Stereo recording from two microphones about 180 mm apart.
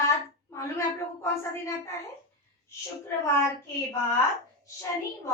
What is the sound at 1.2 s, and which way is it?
Speech, 15° left (ahead or behind).